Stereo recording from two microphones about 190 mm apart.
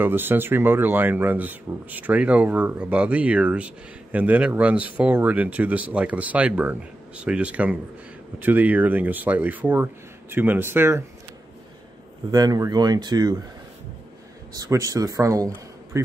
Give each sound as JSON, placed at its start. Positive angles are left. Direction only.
{"t": 0.0, "sound": "speech", "side_deg": -10}
{"t": 12.3, "sound": "speech", "side_deg": -20}
{"t": 14.5, "sound": "a man's voice", "side_deg": -20}